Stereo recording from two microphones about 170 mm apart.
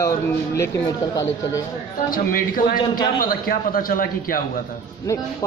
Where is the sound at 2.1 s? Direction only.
55° left (ahead or behind).